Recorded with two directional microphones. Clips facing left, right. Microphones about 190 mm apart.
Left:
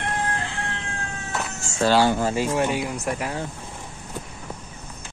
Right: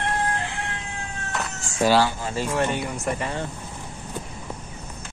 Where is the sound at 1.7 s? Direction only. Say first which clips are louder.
Even; 15° right (ahead or behind).